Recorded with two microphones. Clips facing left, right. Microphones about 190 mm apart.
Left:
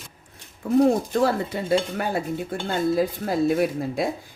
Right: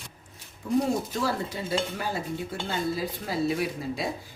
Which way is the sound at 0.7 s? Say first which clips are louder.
Left 7 dB; 55° left (ahead or behind).